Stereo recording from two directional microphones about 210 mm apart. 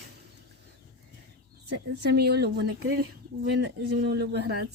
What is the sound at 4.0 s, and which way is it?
Speech, 55° right (ahead or behind).